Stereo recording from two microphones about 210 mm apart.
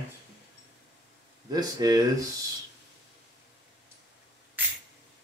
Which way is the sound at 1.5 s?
20° right (ahead or behind).